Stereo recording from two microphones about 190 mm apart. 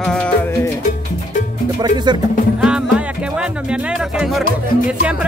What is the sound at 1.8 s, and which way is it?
Speech, 25° right (ahead or behind).